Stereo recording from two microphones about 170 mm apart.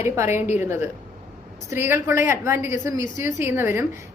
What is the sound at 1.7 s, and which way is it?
A woman's voice, 15° right (ahead or behind).